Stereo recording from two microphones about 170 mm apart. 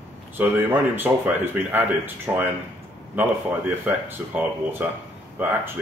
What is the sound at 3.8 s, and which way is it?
Speech, 10° right (ahead or behind).